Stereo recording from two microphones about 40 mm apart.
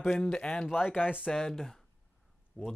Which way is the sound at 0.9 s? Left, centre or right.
Left.